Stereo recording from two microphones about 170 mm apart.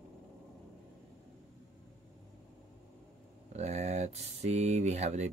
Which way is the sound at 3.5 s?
40° right (ahead or behind).